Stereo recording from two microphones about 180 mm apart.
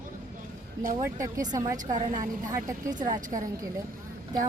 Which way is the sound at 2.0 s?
45° right (ahead or behind).